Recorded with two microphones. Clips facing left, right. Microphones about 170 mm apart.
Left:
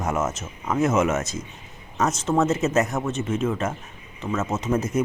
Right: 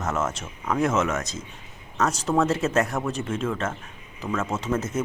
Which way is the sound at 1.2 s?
20° right (ahead or behind).